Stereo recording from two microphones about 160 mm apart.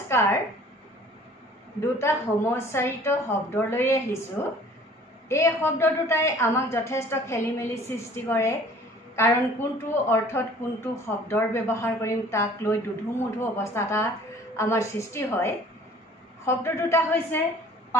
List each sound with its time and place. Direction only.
0.1 s a woman's voice: 15° left (ahead or behind)
2.0 s speech: 15° left (ahead or behind)